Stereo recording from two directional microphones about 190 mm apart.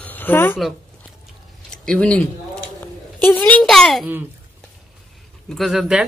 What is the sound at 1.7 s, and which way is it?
Speech, 5° left (ahead or behind).